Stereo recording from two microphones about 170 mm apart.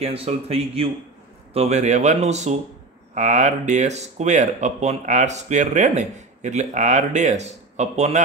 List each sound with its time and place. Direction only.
0.0 s speech: 35° right (ahead or behind)